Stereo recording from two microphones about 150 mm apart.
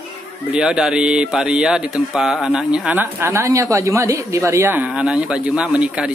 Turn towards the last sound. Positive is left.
turn(degrees=-5)  # may be behind; listen again after turning